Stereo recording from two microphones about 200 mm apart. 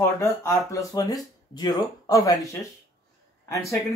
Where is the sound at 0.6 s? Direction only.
15° left (ahead or behind).